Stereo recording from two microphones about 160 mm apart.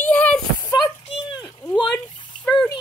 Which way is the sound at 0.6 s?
25° left (ahead or behind).